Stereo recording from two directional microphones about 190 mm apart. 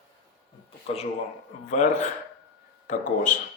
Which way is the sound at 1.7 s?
40° left (ahead or behind).